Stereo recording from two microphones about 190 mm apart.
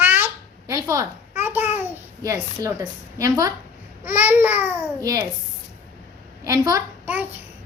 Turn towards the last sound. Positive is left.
turn(degrees=-10)  # may be behind; listen again after turning